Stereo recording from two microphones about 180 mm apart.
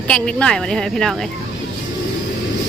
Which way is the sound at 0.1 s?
5° left (ahead or behind).